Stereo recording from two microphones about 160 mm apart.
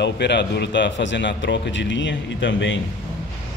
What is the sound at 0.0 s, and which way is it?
A man's voice, 90° left.